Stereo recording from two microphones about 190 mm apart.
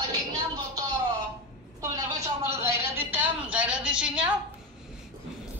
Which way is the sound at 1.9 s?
15° right (ahead or behind).